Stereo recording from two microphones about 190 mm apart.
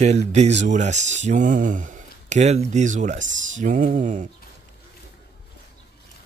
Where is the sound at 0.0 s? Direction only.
35° right (ahead or behind).